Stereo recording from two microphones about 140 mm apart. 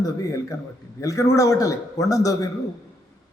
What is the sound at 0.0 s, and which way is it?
A man's voice, 25° left (ahead or behind).